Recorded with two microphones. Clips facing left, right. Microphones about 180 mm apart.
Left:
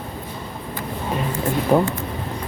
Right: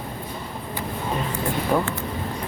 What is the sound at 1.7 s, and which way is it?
Speech, 30° left (ahead or behind).